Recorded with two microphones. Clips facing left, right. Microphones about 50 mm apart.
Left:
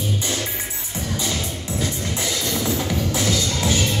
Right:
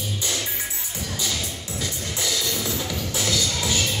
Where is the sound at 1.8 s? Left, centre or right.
Left.